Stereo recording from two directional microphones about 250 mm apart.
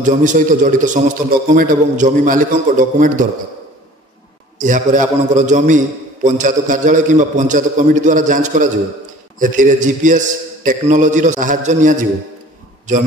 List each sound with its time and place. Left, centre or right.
0.0 s a man's voice: right
4.6 s a man's voice: right